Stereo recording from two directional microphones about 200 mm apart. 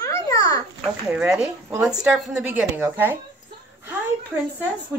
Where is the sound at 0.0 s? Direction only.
15° left (ahead or behind).